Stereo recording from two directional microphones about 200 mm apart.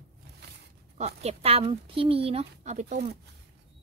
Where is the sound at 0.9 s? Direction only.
35° right (ahead or behind).